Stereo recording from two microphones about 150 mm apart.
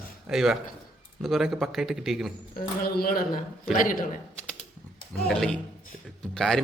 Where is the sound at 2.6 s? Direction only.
90° left.